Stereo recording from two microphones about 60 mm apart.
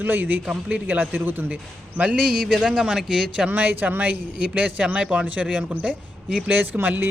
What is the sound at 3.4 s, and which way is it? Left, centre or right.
A man's voice, right.